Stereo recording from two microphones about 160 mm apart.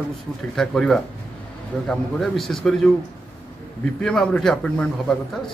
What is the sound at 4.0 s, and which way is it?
Speech, 5° left (ahead or behind).